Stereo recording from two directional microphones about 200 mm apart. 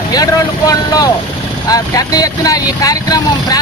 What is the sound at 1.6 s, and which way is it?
Speech, 20° left (ahead or behind).